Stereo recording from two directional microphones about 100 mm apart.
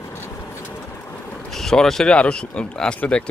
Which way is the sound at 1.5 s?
5° left (ahead or behind).